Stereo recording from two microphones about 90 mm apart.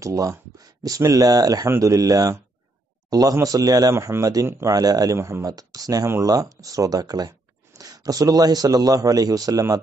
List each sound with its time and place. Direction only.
0.0 s speech: 35° right (ahead or behind)
3.9 s speech: 35° right (ahead or behind)
4.7 s speech: 45° right (ahead or behind)